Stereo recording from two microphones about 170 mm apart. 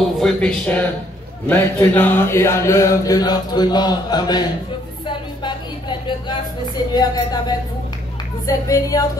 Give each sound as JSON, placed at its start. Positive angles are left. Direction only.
{"t": 0.2, "sound": "speech", "side_deg": 5}
{"t": 1.5, "sound": "mantra", "side_deg": 10}
{"t": 5.0, "sound": "a sound", "side_deg": 25}
{"t": 6.9, "sound": "mantra", "side_deg": 25}